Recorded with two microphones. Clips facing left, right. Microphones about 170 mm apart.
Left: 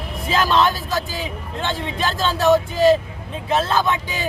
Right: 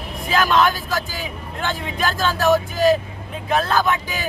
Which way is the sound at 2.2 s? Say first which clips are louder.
Left 2 dB; centre (ahead or behind).